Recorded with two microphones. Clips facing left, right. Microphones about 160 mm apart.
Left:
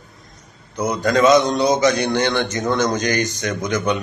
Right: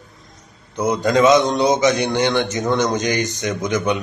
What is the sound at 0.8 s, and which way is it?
Speech, 20° right (ahead or behind).